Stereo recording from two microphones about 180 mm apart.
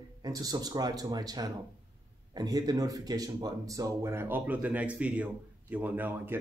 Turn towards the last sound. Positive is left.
turn(degrees=-10)  # may be behind; listen again after turning